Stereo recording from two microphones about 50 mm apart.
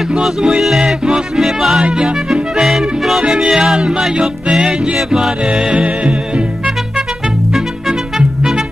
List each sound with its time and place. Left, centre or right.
0.2 s music: centre
1.8 s music: centre
5.4 s music: centre